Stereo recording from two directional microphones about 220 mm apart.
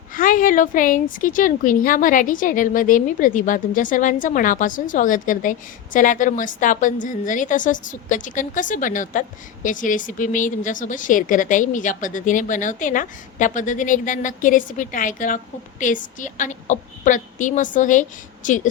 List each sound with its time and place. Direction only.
0.1 s a woman's voice: 40° left (ahead or behind)